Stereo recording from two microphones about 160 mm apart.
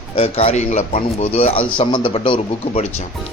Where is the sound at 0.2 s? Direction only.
40° left (ahead or behind).